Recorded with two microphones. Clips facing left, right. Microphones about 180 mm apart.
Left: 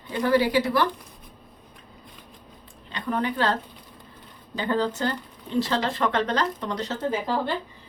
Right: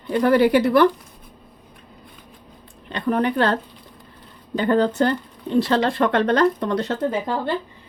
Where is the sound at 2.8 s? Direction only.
60° right (ahead or behind).